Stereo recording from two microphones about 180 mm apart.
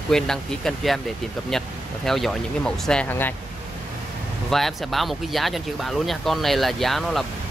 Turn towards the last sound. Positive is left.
turn(degrees=0)  # may be behind; listen again after turning